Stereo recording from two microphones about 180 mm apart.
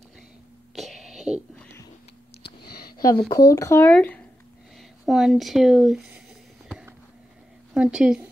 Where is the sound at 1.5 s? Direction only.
10° left (ahead or behind).